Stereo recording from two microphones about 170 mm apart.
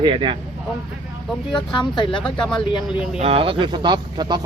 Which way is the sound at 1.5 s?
30° left (ahead or behind).